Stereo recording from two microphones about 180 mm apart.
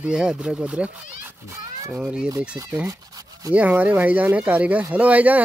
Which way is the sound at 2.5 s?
25° right (ahead or behind).